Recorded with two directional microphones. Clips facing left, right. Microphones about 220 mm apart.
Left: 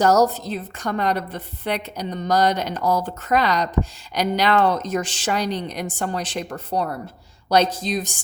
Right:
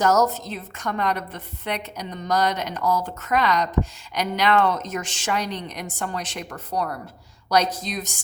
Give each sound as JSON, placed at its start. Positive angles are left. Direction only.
{"t": 0.0, "sound": "a woman's voice", "side_deg": 35}